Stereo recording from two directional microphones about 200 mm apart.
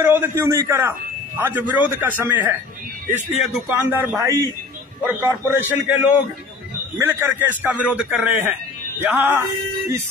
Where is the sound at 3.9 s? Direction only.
10° right (ahead or behind).